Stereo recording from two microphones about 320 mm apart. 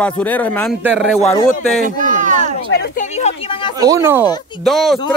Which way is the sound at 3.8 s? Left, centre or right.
Centre.